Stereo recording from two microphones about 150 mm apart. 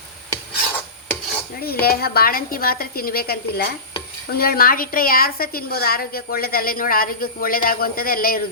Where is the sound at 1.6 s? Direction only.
90° left.